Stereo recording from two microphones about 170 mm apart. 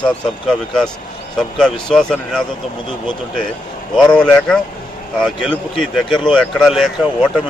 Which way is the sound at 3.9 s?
5° left (ahead or behind).